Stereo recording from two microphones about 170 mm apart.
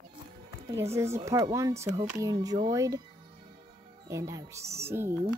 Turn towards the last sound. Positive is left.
turn(degrees=-15)  # may be behind; listen again after turning